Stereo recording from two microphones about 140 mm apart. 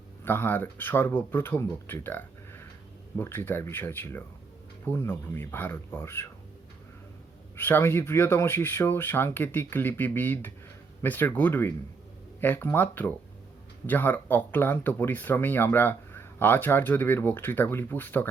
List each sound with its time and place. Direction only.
0.3 s speech: 15° left (ahead or behind)
7.5 s speech: 15° left (ahead or behind)